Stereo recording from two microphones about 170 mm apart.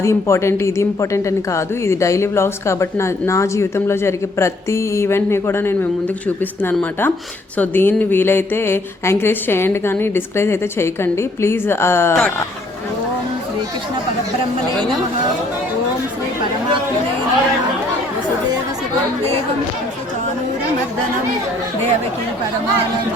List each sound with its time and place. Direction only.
0.0 s a woman's voice: 15° left (ahead or behind)